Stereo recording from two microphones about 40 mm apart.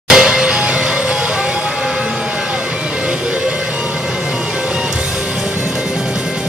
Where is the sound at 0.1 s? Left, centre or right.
Centre.